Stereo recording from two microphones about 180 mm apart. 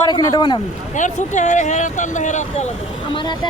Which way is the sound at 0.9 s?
45° left (ahead or behind).